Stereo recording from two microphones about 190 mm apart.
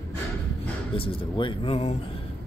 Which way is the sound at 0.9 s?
25° left (ahead or behind).